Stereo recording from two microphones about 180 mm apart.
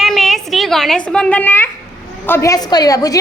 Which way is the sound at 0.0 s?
Centre (ahead or behind).